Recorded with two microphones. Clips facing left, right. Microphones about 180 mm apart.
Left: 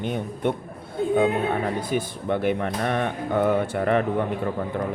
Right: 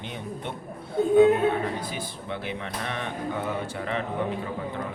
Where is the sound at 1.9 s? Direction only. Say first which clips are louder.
Left 9 dB; 50° left (ahead or behind).